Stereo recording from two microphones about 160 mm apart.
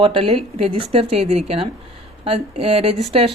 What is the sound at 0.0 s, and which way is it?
Speech, 35° right (ahead or behind).